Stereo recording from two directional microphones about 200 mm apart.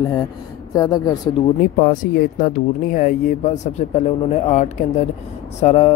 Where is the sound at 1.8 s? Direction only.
40° left (ahead or behind).